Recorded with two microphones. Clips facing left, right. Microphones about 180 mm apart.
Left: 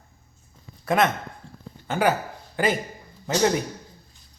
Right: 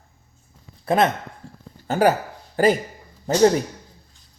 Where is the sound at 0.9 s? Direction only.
30° right (ahead or behind).